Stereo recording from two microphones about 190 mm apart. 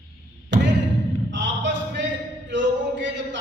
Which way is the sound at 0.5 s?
70° right (ahead or behind).